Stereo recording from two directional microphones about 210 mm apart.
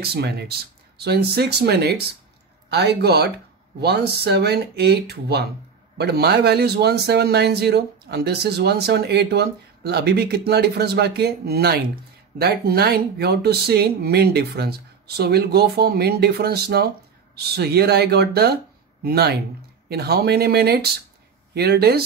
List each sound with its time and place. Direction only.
0.0 s speech: 50° right (ahead or behind)